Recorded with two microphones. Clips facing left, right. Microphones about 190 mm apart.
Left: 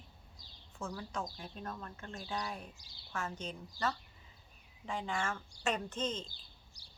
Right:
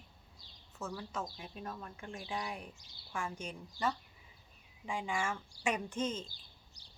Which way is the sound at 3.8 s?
35° left (ahead or behind).